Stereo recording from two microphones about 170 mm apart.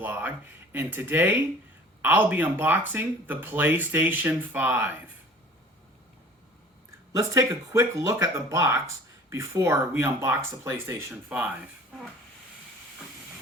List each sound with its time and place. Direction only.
0.0 s speech: 10° right (ahead or behind)
7.1 s speech: 20° right (ahead or behind)